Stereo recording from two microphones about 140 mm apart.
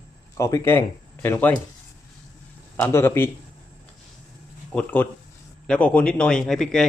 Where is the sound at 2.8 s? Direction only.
20° left (ahead or behind).